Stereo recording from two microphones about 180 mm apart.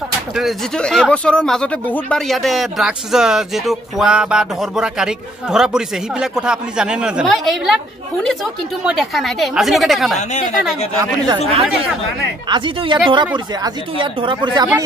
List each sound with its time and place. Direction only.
0.4 s speech: centre (ahead or behind)
8.8 s speech: centre (ahead or behind)
12.4 s speech: 25° right (ahead or behind)